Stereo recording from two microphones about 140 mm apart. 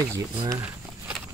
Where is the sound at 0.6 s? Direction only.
10° right (ahead or behind).